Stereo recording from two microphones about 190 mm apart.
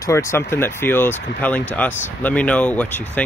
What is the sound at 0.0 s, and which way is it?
Speech, 15° left (ahead or behind).